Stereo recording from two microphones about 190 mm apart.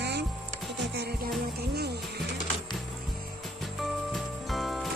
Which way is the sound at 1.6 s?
55° right (ahead or behind).